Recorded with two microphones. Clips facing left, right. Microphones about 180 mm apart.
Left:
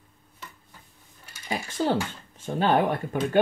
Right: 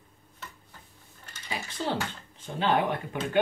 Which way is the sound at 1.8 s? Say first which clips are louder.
Left 6 dB; 45° left (ahead or behind).